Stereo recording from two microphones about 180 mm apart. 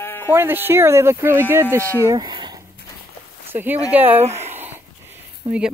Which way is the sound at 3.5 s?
10° right (ahead or behind).